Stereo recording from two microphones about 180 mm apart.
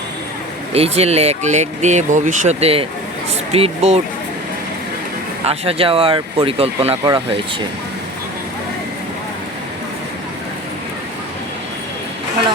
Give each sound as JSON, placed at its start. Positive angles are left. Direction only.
{"t": 0.7, "sound": "speech", "side_deg": -35}
{"t": 5.5, "sound": "speech", "side_deg": -30}